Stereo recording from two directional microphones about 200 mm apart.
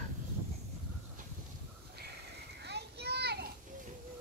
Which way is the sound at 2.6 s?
55° right (ahead or behind).